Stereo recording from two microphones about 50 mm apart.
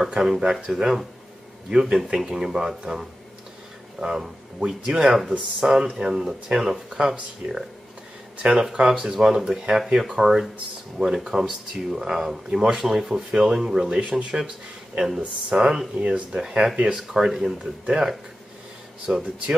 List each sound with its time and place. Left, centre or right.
0.0 s speech: centre
13.8 s speech: right
14.9 s speech: right
15.5 s speech: centre
19.1 s speech: right